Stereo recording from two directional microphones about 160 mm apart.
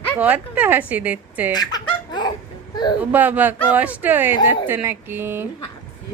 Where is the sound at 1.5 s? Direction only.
25° left (ahead or behind).